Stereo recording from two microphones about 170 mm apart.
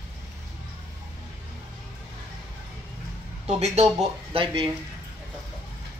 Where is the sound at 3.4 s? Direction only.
40° right (ahead or behind).